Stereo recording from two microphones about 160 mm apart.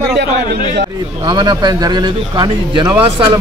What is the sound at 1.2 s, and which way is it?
Speech, 25° right (ahead or behind).